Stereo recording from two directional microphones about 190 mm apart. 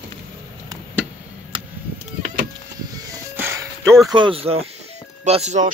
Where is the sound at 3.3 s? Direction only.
10° right (ahead or behind).